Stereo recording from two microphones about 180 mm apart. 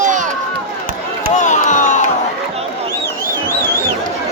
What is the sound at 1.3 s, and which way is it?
Chop, 40° left (ahead or behind).